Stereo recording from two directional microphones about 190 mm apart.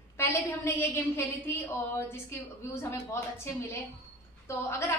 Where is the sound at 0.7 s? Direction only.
15° left (ahead or behind).